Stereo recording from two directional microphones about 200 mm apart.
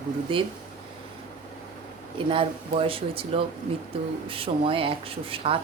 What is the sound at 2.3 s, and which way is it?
Speech, 25° right (ahead or behind).